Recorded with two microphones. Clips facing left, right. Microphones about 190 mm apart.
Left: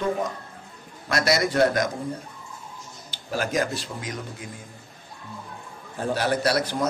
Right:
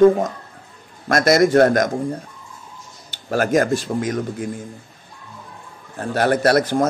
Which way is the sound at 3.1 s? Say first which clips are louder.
Right 9 dB; 50° right (ahead or behind).